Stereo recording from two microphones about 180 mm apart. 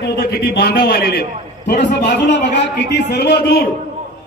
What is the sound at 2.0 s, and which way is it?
A man's voice, 75° left (ahead or behind).